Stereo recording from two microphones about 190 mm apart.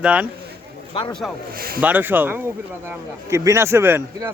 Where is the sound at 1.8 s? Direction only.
10° right (ahead or behind).